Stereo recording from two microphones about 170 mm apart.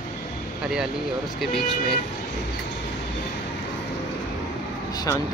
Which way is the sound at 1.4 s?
Centre (ahead or behind).